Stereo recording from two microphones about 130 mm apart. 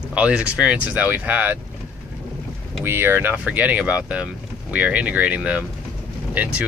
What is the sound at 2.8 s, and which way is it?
Speech, 20° right (ahead or behind).